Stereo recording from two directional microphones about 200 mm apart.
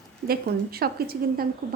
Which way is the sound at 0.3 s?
50° right (ahead or behind).